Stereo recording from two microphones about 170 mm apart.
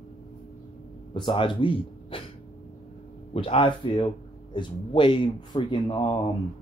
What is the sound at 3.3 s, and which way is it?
Speech, 35° left (ahead or behind).